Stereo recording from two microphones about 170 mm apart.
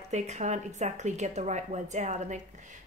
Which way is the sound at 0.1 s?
45° right (ahead or behind).